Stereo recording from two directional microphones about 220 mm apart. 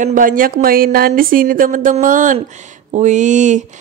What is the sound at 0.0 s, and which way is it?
A woman's voice, 40° right (ahead or behind).